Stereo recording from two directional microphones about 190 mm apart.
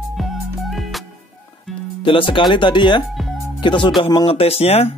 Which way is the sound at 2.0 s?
25° left (ahead or behind).